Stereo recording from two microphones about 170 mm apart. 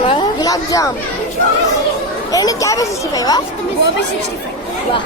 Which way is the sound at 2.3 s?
20° left (ahead or behind).